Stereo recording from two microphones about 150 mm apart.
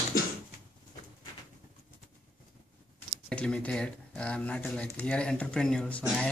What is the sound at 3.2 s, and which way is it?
Speech, 5° left (ahead or behind).